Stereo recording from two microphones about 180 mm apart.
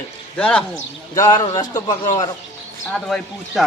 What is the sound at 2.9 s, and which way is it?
Speech, centre (ahead or behind).